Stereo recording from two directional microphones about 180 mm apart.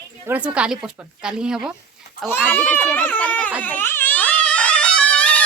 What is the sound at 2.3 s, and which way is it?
Speech, 10° left (ahead or behind).